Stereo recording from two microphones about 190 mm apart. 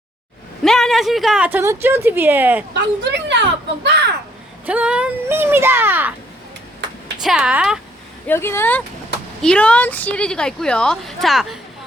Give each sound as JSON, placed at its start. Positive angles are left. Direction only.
{"t": 0.6, "sound": "speech", "side_deg": 0}
{"t": 2.7, "sound": "speech", "side_deg": -65}
{"t": 4.6, "sound": "speech", "side_deg": -5}
{"t": 7.2, "sound": "a woman's voice", "side_deg": -5}
{"t": 8.3, "sound": "a woman's voice", "side_deg": 10}